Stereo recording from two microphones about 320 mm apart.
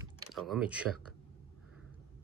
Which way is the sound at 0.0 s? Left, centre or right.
Centre.